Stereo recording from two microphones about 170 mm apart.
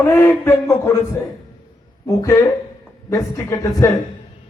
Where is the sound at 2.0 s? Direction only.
20° left (ahead or behind).